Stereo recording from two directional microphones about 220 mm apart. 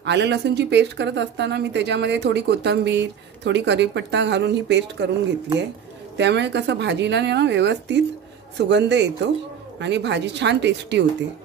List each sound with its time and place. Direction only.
0.0 s a woman's voice: 50° right (ahead or behind)
6.1 s a woman's voice: 50° right (ahead or behind)